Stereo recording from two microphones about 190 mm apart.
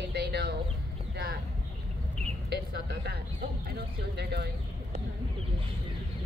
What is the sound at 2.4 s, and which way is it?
A woman's voice, 60° right (ahead or behind).